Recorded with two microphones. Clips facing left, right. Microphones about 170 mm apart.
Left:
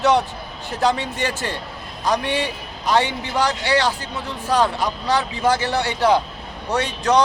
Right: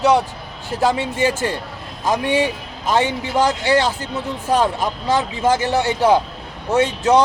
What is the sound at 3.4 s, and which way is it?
Speech, 25° right (ahead or behind).